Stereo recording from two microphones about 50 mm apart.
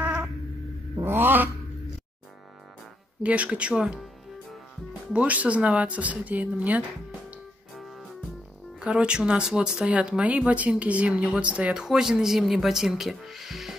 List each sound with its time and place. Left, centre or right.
0.0 s cat: right
1.0 s a sound: right
3.2 s speech: right
5.1 s speech: right
8.8 s speech: centre
11.1 s speech: centre
11.8 s speech: centre